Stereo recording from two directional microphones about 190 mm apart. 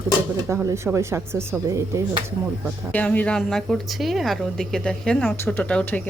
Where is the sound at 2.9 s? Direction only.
10° left (ahead or behind).